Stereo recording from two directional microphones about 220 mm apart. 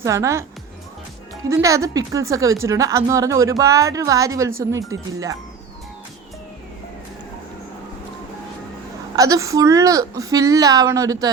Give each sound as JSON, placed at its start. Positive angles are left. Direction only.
{"t": 0.0, "sound": "a woman's voice", "side_deg": -15}
{"t": 1.5, "sound": "a woman's voice", "side_deg": -15}
{"t": 9.1, "sound": "a woman's voice", "side_deg": -15}